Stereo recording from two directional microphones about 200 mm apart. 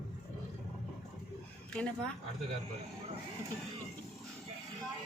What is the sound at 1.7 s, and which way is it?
Speech, 5° left (ahead or behind).